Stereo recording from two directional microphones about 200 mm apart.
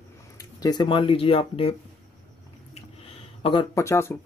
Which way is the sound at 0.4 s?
20° left (ahead or behind).